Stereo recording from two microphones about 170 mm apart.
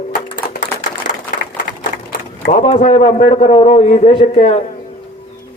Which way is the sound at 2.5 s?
40° left (ahead or behind).